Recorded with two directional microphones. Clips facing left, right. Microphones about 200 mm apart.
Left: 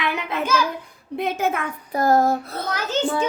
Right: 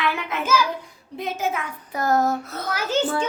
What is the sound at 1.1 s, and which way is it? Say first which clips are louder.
Speech: left 3 dB; 60° left (ahead or behind).